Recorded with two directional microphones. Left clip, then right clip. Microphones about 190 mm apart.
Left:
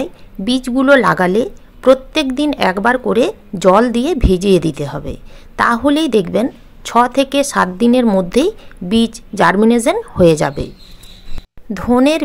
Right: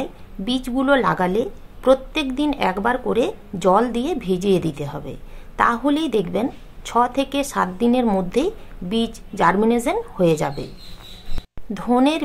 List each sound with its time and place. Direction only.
0.0 s a woman's voice: 30° left (ahead or behind)
11.7 s a woman's voice: 25° left (ahead or behind)